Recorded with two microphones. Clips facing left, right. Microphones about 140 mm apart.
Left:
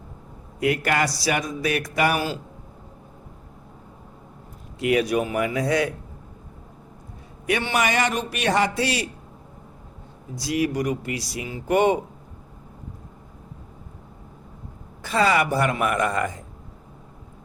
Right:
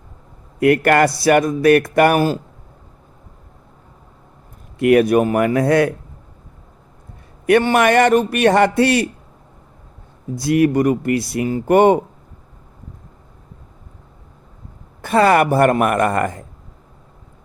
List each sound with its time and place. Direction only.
0.6 s speech: 55° right (ahead or behind)
4.8 s speech: 55° right (ahead or behind)
7.4 s speech: 50° right (ahead or behind)
10.3 s speech: 55° right (ahead or behind)
15.0 s speech: 55° right (ahead or behind)